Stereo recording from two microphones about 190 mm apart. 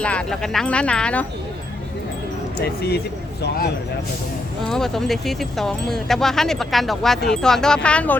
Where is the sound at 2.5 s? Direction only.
55° left (ahead or behind).